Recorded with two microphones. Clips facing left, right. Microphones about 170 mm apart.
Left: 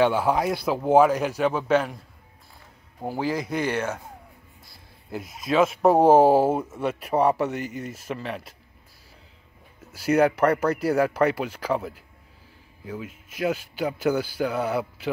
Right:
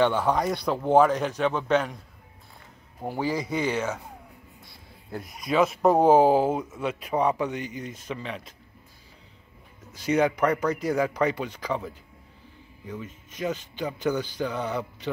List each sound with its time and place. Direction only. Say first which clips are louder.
0.0 s a man's voice: left 2 dB; 5° left (ahead or behind)
3.0 s speech: left 1 dB; centre (ahead or behind)
5.2 s speech: left 2 dB; 25° left (ahead or behind)
5.8 s speech: left 2 dB; 5° left (ahead or behind)
9.9 s a man's voice: left 3 dB; 5° left (ahead or behind)